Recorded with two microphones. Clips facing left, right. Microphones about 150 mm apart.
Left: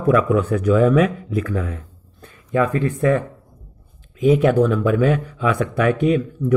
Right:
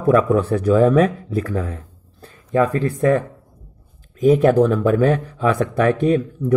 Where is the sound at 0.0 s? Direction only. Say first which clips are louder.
Right 1 dB; 35° right (ahead or behind).